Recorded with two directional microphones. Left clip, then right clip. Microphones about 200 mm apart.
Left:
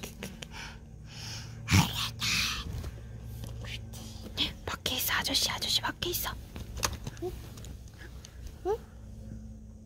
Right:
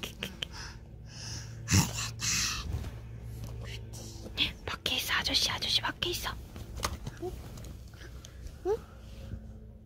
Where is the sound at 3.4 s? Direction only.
15° left (ahead or behind).